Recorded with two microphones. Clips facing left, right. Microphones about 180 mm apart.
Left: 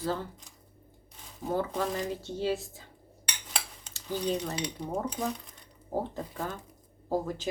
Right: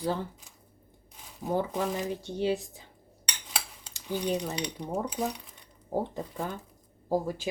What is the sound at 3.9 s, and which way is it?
Speech, 15° right (ahead or behind).